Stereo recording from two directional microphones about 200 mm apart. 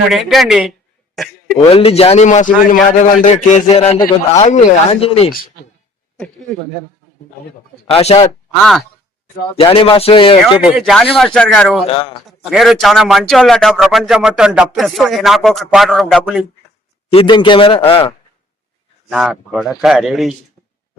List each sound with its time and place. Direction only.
0.1 s speech: centre (ahead or behind)
1.7 s a man's voice: 30° left (ahead or behind)
7.9 s a man's voice: 30° left (ahead or behind)
9.6 s speech: 30° left (ahead or behind)
10.6 s a man's voice: centre (ahead or behind)
11.9 s speech: 25° left (ahead or behind)
12.4 s a man's voice: centre (ahead or behind)
17.1 s speech: 25° left (ahead or behind)
19.1 s a man's voice: centre (ahead or behind)